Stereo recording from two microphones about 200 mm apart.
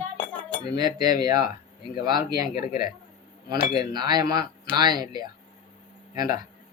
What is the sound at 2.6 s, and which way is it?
Speech, 45° left (ahead or behind).